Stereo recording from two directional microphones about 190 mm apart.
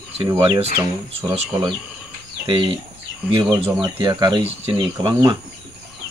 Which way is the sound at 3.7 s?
25° right (ahead or behind).